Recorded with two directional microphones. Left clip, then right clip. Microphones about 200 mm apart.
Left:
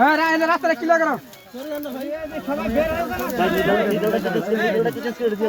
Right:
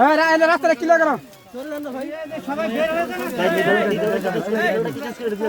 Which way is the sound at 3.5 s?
60° right (ahead or behind).